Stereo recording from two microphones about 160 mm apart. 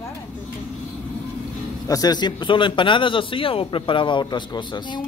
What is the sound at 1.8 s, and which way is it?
A man's voice, 25° left (ahead or behind).